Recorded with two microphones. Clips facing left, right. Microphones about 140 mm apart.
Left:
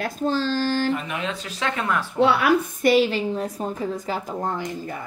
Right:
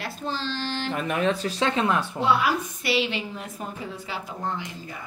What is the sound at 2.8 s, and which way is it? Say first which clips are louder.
A woman's voice: left 7 dB; 45° left (ahead or behind).